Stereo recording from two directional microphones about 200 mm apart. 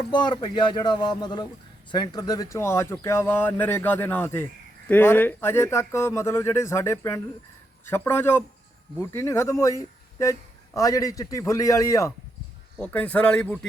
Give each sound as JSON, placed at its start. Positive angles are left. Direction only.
{"t": 0.1, "sound": "speech", "side_deg": 20}